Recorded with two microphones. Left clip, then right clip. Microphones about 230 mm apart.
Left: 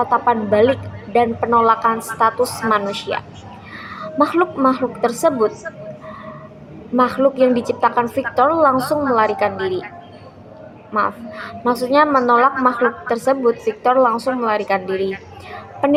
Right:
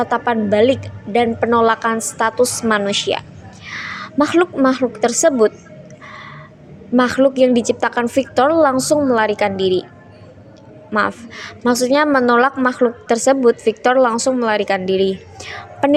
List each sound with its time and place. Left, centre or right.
0.0 s a woman's voice: right
6.9 s a woman's voice: right
10.9 s a woman's voice: right